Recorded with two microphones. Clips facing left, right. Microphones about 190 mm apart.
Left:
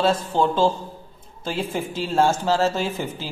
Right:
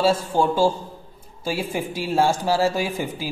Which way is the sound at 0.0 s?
10° right (ahead or behind).